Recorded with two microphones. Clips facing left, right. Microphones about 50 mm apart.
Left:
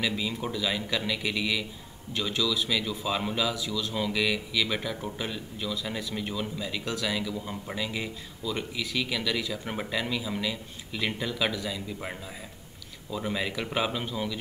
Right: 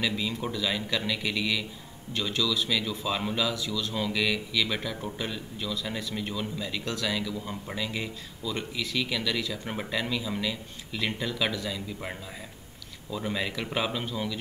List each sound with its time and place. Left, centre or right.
0.0 s speech: centre
6.8 s speech: centre
7.1 s speech: centre